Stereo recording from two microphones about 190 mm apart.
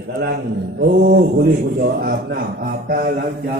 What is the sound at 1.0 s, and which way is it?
A man's voice, 55° right (ahead or behind).